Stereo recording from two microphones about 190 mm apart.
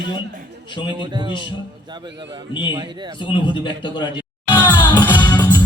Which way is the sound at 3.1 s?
25° left (ahead or behind).